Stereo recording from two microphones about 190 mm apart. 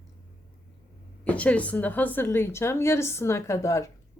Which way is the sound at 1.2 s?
5° left (ahead or behind).